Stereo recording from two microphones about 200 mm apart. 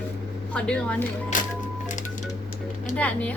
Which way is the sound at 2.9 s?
5° left (ahead or behind).